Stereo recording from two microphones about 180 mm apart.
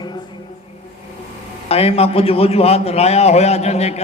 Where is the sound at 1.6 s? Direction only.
35° left (ahead or behind).